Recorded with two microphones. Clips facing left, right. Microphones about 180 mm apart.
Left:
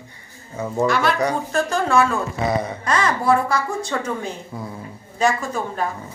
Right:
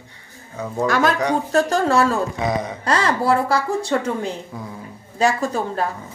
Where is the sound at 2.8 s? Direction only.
35° right (ahead or behind).